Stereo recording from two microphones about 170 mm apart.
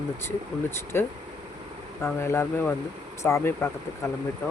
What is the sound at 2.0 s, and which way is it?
Speech, 15° left (ahead or behind).